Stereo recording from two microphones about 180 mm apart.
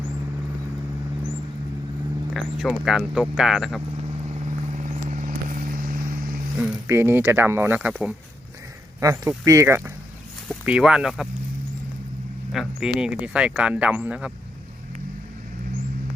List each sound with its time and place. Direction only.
2.3 s speech: centre (ahead or behind)
4.8 s vehicle: 45° right (ahead or behind)
6.8 s speech: 15° right (ahead or behind)
9.0 s speech: 15° right (ahead or behind)
12.6 s speech: centre (ahead or behind)